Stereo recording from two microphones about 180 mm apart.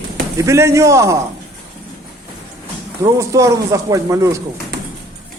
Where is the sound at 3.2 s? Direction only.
15° right (ahead or behind).